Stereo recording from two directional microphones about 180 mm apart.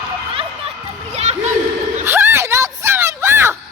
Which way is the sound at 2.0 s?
15° right (ahead or behind).